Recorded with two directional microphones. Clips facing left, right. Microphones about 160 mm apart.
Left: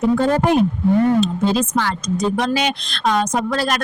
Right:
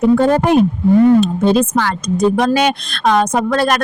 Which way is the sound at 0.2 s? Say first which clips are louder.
Right 4 dB; 55° right (ahead or behind).